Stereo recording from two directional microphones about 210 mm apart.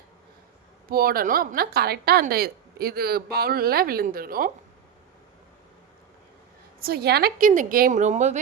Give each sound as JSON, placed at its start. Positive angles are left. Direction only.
{"t": 0.9, "sound": "a woman's voice", "side_deg": -45}
{"t": 6.7, "sound": "a woman's voice", "side_deg": -45}